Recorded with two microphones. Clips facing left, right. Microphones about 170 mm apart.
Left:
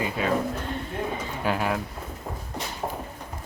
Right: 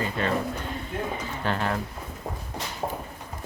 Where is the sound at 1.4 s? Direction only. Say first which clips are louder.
Left 2 dB; 10° left (ahead or behind).